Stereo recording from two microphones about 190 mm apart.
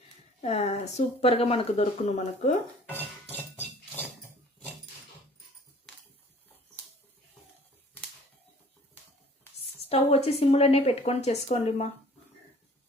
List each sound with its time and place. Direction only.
0.4 s speech: 35° left (ahead or behind)
9.9 s speech: 35° left (ahead or behind)